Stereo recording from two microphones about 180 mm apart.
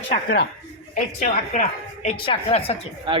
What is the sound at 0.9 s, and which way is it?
A woman's voice, 45° left (ahead or behind).